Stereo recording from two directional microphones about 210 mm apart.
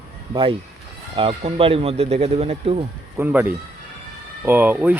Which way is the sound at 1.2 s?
25° right (ahead or behind).